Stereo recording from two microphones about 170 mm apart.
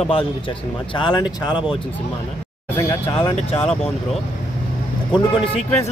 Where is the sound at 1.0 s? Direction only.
25° left (ahead or behind).